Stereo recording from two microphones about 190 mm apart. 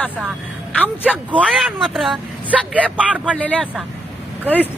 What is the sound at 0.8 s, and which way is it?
Speech, 5° right (ahead or behind).